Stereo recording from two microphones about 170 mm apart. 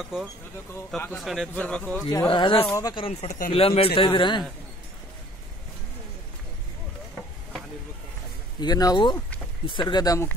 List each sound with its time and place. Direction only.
0.9 s speech: centre (ahead or behind)
2.2 s speech: 30° left (ahead or behind)
8.5 s speech: 25° left (ahead or behind)